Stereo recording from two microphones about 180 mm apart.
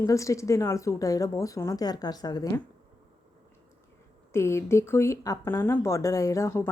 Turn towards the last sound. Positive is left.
turn(degrees=15)  # may be behind; listen again after turning